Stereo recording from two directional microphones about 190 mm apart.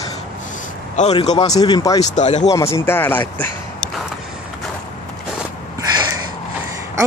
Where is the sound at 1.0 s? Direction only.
40° left (ahead or behind).